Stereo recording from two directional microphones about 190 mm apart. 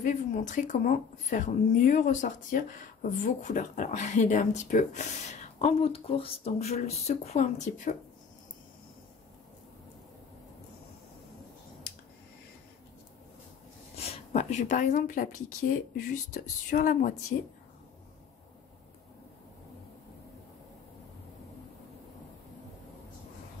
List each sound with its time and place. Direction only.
0.0 s a woman's voice: 40° left (ahead or behind)
13.9 s speech: 35° left (ahead or behind)